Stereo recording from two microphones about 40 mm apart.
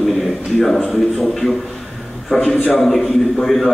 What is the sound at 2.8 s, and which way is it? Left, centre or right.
Speech, centre.